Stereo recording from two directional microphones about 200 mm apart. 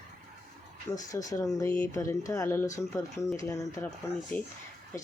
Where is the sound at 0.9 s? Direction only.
15° left (ahead or behind).